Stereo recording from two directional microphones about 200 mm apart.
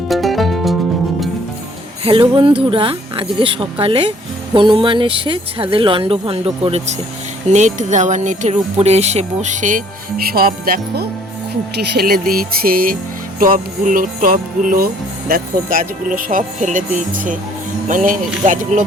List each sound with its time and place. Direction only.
0.1 s music: centre (ahead or behind)
2.0 s speech: 25° right (ahead or behind); by 11.1 s 50° right (ahead or behind)
11.8 s music: 50° right (ahead or behind)
16.6 s speech: 40° right (ahead or behind)